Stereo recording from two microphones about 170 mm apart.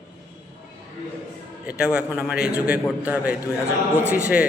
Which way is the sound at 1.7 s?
5° right (ahead or behind).